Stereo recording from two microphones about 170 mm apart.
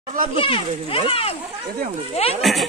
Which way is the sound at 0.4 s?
30° left (ahead or behind).